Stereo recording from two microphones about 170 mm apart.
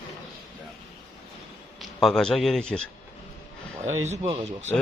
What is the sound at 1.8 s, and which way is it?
A man's voice, centre (ahead or behind).